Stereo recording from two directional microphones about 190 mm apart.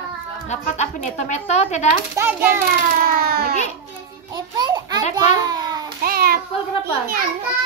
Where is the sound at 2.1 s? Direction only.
10° right (ahead or behind).